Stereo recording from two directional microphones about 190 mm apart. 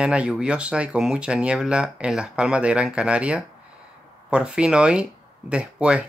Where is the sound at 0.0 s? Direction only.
5° right (ahead or behind).